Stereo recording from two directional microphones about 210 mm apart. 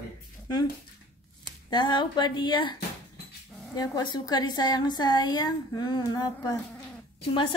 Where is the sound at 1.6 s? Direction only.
20° left (ahead or behind).